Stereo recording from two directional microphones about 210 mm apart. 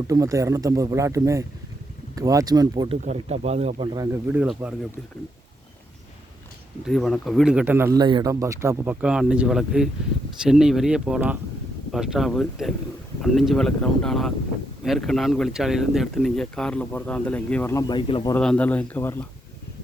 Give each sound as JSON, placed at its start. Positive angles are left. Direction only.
{"t": 0.1, "sound": "speech", "side_deg": -15}
{"t": 3.0, "sound": "speech", "side_deg": -30}
{"t": 3.9, "sound": "speech", "side_deg": -15}
{"t": 4.4, "sound": "speech", "side_deg": -5}
{"t": 6.8, "sound": "speech", "side_deg": 0}
{"t": 18.3, "sound": "speech", "side_deg": 5}